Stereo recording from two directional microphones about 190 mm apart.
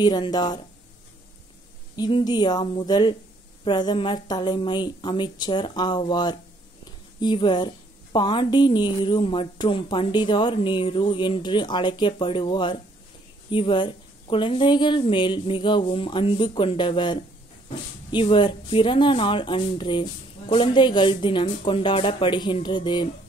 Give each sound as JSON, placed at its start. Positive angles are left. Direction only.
{"t": 0.0, "sound": "a woman's voice", "side_deg": 25}
{"t": 2.0, "sound": "a woman's voice", "side_deg": 25}